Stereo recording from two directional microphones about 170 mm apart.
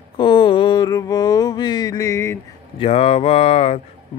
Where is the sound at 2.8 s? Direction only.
35° left (ahead or behind).